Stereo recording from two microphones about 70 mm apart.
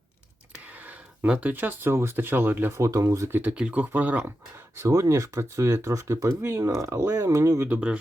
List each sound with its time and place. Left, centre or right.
0.6 s speech: right
2.7 s speech: right
3.2 s speech: right
3.5 s speech: centre
4.7 s speech: right
6.4 s speech: right
6.7 s speech: right
7.0 s speech: right
7.3 s speech: right
7.7 s speech: centre